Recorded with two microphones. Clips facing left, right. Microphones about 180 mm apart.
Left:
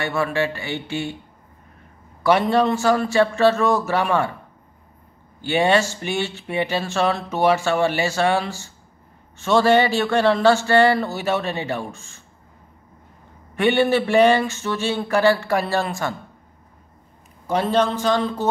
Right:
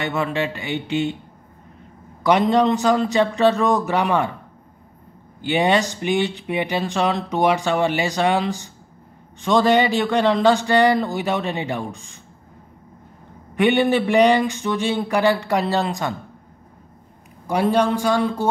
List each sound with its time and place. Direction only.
0.0 s speech: 20° right (ahead or behind)
2.2 s speech: 15° right (ahead or behind)
5.4 s speech: 15° right (ahead or behind)
13.6 s speech: 15° right (ahead or behind)
17.5 s speech: 10° right (ahead or behind)